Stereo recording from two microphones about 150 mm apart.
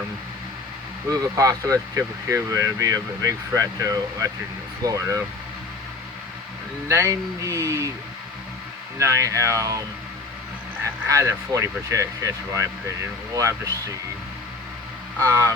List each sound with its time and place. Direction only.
1.1 s speech: 20° right (ahead or behind)
6.8 s speech: 20° right (ahead or behind)
9.0 s speech: 20° right (ahead or behind)
10.8 s speech: 20° right (ahead or behind)
15.2 s speech: 20° right (ahead or behind)